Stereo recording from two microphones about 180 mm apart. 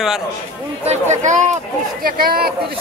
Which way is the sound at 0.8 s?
40° right (ahead or behind).